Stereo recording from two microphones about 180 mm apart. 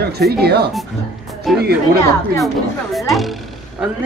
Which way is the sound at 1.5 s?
Centre (ahead or behind).